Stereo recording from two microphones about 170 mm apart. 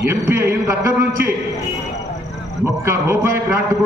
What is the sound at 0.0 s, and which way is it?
A man's voice, 15° right (ahead or behind).